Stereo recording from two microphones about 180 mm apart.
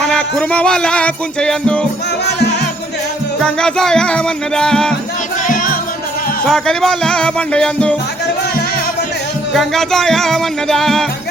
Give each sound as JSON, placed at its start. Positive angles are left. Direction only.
{"t": 0.0, "sound": "music", "side_deg": 5}
{"t": 2.2, "sound": "music", "side_deg": 65}
{"t": 3.4, "sound": "music", "side_deg": 5}
{"t": 5.5, "sound": "music", "side_deg": 50}
{"t": 6.4, "sound": "music", "side_deg": 5}
{"t": 9.5, "sound": "music", "side_deg": 0}